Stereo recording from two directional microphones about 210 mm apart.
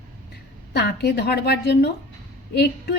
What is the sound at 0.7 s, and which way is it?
A woman's voice, 50° left (ahead or behind).